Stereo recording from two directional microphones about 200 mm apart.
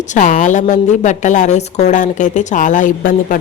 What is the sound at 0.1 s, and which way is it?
A woman's voice, 40° left (ahead or behind).